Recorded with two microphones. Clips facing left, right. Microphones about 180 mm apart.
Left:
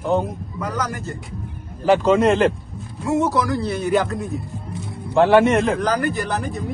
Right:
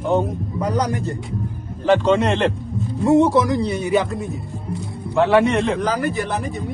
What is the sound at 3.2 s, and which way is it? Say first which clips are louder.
Speech: right 2 dB; 25° right (ahead or behind).